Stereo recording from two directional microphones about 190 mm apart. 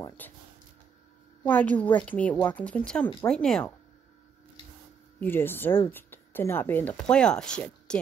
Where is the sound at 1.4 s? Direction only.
10° left (ahead or behind).